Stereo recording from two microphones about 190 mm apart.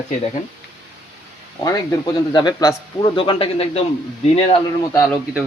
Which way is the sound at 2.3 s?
20° left (ahead or behind).